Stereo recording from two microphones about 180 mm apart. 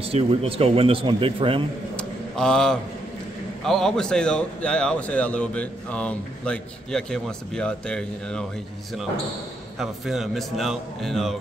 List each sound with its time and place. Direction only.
0.0 s speech: 30° right (ahead or behind)
2.0 s a sound: 5° left (ahead or behind)
3.6 s speech: centre (ahead or behind)
9.8 s speech: centre (ahead or behind)